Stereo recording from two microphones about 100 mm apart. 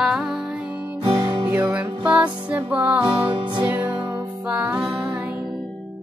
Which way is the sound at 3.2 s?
55° right (ahead or behind).